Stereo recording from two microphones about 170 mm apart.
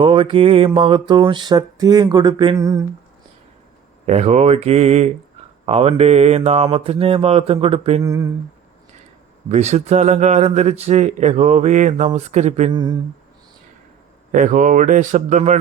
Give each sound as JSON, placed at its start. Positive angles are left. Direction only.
{"t": 0.0, "sound": "mantra", "side_deg": -30}
{"t": 4.0, "sound": "a man's voice", "side_deg": -40}
{"t": 8.0, "sound": "mantra", "side_deg": -20}
{"t": 9.5, "sound": "a man's voice", "side_deg": -40}
{"t": 12.7, "sound": "mantra", "side_deg": -25}
{"t": 14.3, "sound": "speech", "side_deg": -50}